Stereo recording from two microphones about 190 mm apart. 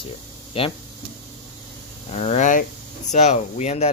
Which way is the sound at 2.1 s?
35° left (ahead or behind).